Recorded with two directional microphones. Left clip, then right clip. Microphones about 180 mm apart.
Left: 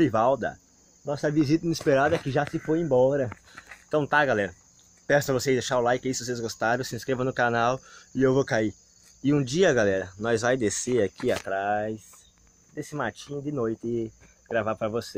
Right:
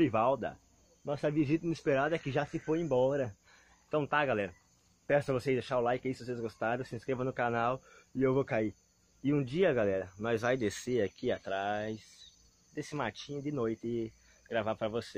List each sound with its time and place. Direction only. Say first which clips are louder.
0.0 s speech: left 7 dB; 10° left (ahead or behind)
1.3 s speech: left 8 dB; 15° left (ahead or behind)
3.9 s speech: left 8 dB; 5° left (ahead or behind)
11.4 s speech: left 8 dB; 10° right (ahead or behind)
13.8 s speech: left 7 dB; 5° right (ahead or behind)